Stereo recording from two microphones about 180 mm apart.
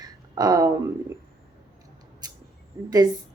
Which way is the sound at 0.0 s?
20° right (ahead or behind).